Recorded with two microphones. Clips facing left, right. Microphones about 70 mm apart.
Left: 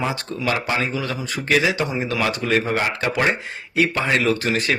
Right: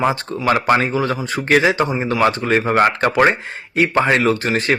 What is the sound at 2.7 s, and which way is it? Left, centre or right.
Speech, right.